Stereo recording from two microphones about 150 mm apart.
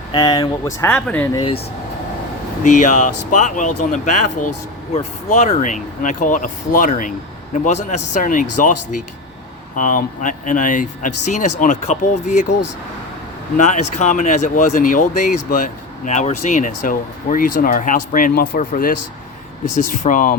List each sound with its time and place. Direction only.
0.1 s speech: 25° left (ahead or behind); by 1.3 s 10° left (ahead or behind)
1.3 s speech: 25° left (ahead or behind)
2.6 s speech: 55° left (ahead or behind)
13.6 s speech: 55° left (ahead or behind)